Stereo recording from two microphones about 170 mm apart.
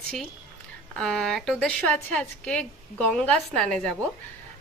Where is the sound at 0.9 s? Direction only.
5° left (ahead or behind).